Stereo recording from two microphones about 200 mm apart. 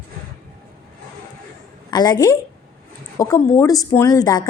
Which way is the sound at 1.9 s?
20° left (ahead or behind).